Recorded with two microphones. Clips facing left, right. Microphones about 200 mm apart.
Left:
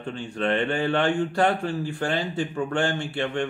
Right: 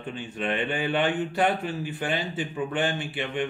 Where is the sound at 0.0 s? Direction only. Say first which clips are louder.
Left 4 dB; 5° right (ahead or behind).